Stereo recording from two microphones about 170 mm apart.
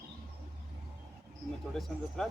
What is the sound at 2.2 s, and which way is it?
Speech, 5° left (ahead or behind).